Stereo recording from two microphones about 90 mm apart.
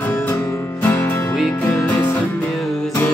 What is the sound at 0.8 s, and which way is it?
Music, 20° left (ahead or behind).